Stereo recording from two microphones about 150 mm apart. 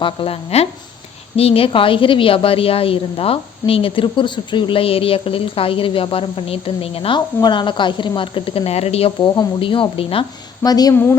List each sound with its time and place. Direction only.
0.0 s a woman's voice: 35° left (ahead or behind)
10.6 s speech: 25° left (ahead or behind)
10.9 s a woman's voice: 15° left (ahead or behind)